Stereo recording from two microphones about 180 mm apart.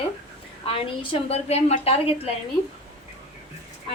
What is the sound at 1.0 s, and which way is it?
A woman's voice, 30° left (ahead or behind).